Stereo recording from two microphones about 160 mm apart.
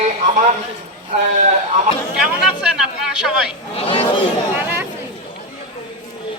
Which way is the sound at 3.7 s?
35° left (ahead or behind).